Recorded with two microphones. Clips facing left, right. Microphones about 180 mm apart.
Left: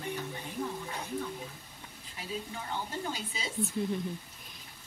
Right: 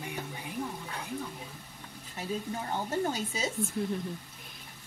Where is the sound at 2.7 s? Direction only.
45° right (ahead or behind).